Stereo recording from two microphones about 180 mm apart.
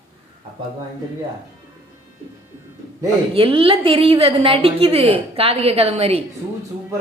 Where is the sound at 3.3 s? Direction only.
30° right (ahead or behind).